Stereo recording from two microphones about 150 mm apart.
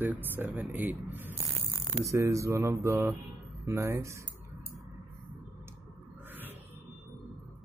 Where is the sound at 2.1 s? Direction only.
20° right (ahead or behind).